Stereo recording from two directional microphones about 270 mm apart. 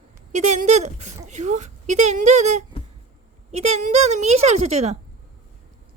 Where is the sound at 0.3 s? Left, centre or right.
Right.